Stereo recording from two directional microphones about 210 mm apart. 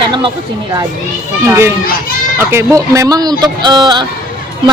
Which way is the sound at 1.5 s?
10° right (ahead or behind).